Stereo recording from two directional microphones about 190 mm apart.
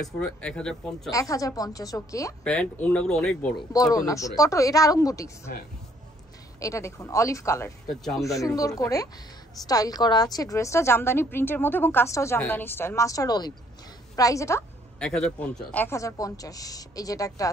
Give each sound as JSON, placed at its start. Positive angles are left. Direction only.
{"t": 0.0, "sound": "speech", "side_deg": 5}
{"t": 1.1, "sound": "a woman's voice", "side_deg": 15}
{"t": 2.4, "sound": "speech", "side_deg": 5}
{"t": 3.7, "sound": "a woman's voice", "side_deg": 20}
{"t": 6.6, "sound": "a woman's voice", "side_deg": 15}
{"t": 7.9, "sound": "speech", "side_deg": 0}
{"t": 8.2, "sound": "a woman's voice", "side_deg": 15}
{"t": 15.0, "sound": "a woman's voice", "side_deg": 5}